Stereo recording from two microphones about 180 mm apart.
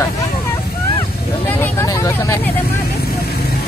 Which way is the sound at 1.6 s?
15° left (ahead or behind).